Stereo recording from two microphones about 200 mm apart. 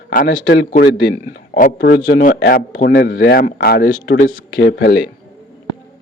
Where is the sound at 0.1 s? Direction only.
45° left (ahead or behind).